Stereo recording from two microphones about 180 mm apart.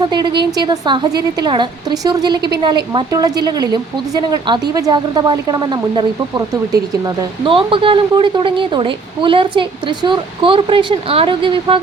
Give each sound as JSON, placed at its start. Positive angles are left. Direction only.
{"t": 0.0, "sound": "speech", "side_deg": -25}